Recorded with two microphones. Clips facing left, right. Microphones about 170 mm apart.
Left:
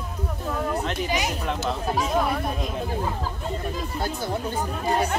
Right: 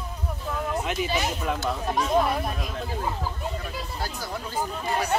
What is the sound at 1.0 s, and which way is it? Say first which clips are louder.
Speech: left 1 dB; 15° left (ahead or behind).